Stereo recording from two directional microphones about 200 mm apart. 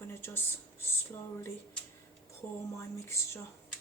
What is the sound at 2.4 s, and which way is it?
Speech, 15° left (ahead or behind).